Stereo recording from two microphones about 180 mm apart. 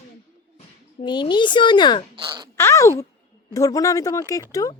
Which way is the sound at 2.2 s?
25° right (ahead or behind).